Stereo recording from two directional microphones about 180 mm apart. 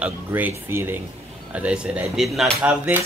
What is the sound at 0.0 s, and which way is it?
Speech, 10° right (ahead or behind).